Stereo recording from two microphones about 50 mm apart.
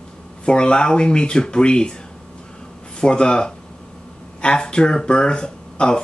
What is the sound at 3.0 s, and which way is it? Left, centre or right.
Speech, centre.